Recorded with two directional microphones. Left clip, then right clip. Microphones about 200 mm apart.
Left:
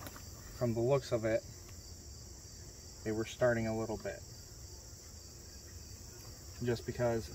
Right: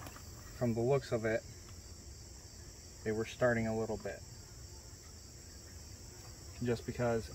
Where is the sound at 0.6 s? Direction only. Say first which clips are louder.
Left 1 dB; 20° left (ahead or behind).